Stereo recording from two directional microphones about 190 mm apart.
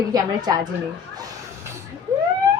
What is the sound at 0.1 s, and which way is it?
Speech, 20° right (ahead or behind).